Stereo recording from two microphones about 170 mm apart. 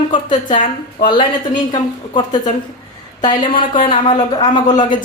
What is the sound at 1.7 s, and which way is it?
Speech, 25° left (ahead or behind).